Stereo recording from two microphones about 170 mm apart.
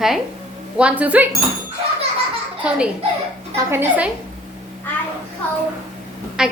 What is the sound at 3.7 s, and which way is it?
Speech, 10° right (ahead or behind).